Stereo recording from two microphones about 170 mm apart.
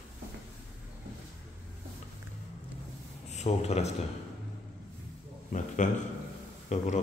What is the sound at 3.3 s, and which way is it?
Speech, 40° left (ahead or behind).